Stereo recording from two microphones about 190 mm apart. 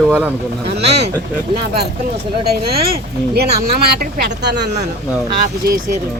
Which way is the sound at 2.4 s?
55° right (ahead or behind).